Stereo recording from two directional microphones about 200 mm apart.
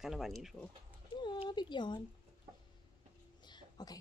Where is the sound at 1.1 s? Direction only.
25° left (ahead or behind).